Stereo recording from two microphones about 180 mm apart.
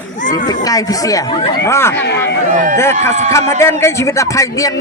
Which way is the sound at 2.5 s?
45° right (ahead or behind).